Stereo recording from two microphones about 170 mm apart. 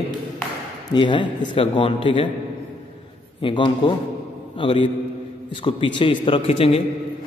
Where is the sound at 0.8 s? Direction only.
30° left (ahead or behind).